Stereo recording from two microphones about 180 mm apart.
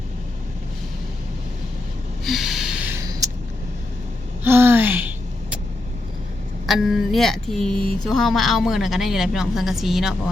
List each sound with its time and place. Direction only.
2.2 s gasp: centre (ahead or behind)
2.9 s a sound: 20° right (ahead or behind)
4.4 s gasp: 10° right (ahead or behind)
6.7 s a woman's voice: centre (ahead or behind)